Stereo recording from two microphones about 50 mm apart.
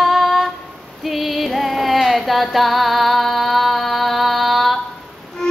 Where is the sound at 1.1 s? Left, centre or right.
Centre.